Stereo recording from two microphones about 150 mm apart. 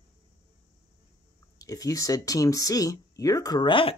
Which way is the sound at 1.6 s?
25° left (ahead or behind).